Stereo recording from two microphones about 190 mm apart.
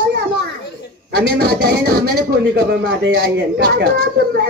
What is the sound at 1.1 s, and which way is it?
Speech, 60° right (ahead or behind).